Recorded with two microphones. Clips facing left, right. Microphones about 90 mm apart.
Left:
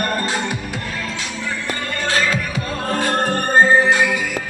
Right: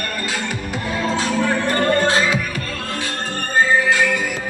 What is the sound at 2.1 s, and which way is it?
Music, 15° right (ahead or behind).